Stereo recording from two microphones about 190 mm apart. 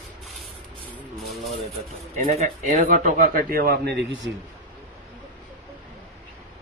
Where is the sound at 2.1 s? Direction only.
40° right (ahead or behind); by 4.2 s 60° right (ahead or behind).